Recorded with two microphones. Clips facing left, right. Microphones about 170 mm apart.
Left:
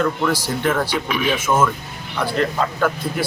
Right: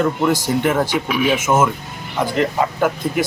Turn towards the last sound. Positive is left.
turn(degrees=-15)  # may be behind; listen again after turning